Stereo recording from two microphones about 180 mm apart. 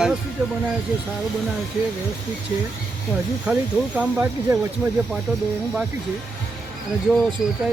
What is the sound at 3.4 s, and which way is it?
Speech, 5° right (ahead or behind).